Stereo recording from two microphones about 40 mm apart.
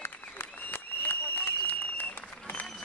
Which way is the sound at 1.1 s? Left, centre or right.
Left.